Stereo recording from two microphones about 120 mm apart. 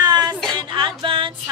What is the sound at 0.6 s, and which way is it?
Music, 40° right (ahead or behind).